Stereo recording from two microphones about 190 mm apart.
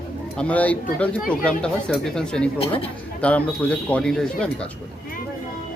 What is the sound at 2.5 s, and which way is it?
Speech, 30° left (ahead or behind).